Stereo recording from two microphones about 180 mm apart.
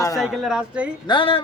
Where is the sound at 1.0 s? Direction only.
25° left (ahead or behind).